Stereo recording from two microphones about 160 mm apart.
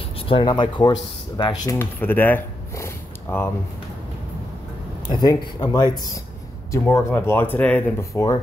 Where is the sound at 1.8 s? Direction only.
10° left (ahead or behind).